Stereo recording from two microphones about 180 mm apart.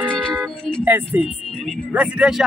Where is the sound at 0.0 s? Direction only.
5° left (ahead or behind).